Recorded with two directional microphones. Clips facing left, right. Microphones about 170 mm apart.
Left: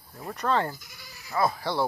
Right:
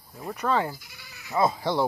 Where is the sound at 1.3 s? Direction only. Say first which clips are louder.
Right 2 dB; 20° right (ahead or behind).